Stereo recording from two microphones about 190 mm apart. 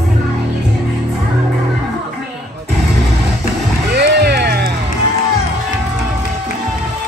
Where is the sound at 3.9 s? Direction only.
60° right (ahead or behind).